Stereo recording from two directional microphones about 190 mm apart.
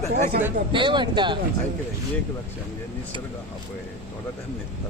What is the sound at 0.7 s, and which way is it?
Speech, 25° right (ahead or behind).